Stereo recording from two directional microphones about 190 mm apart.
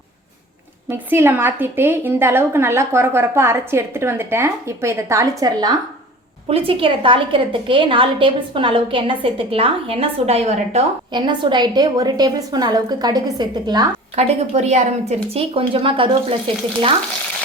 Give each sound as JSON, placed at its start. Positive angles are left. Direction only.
{"t": 0.9, "sound": "a woman's voice", "side_deg": -10}
{"t": 14.2, "sound": "a woman's voice", "side_deg": -35}